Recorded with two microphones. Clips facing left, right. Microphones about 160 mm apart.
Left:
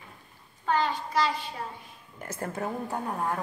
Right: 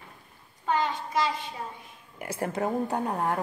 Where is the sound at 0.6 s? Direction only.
20° right (ahead or behind).